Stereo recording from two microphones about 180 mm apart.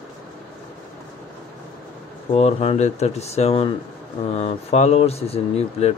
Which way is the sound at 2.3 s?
35° left (ahead or behind).